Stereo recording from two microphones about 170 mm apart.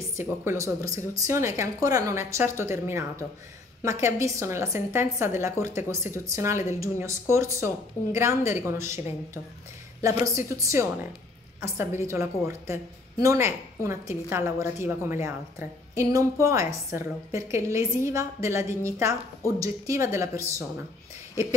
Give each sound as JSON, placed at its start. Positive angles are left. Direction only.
{"t": 0.2, "sound": "a woman's voice", "side_deg": -15}
{"t": 10.2, "sound": "a woman's voice", "side_deg": -20}